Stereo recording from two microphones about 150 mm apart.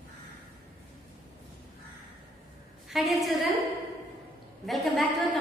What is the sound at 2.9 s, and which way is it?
Speech, centre (ahead or behind).